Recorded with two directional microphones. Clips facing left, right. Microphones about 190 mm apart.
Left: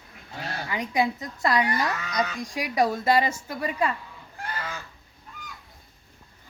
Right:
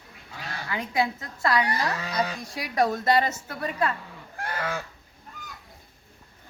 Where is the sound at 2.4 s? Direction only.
10° left (ahead or behind).